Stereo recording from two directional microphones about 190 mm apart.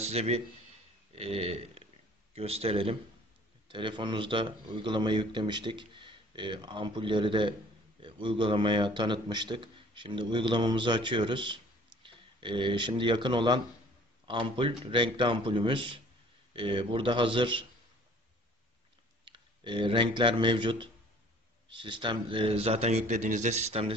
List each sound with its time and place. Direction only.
0.0 s a man's voice: 35° right (ahead or behind)
19.2 s speech: 25° right (ahead or behind)